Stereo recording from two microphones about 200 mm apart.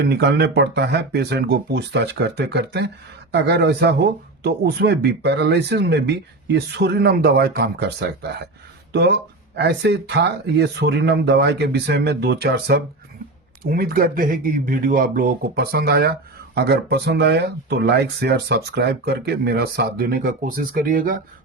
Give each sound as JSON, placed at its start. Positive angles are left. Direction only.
{"t": 0.0, "sound": "speech", "side_deg": -55}